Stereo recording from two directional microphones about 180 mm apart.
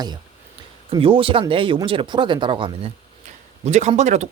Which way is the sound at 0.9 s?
30° right (ahead or behind).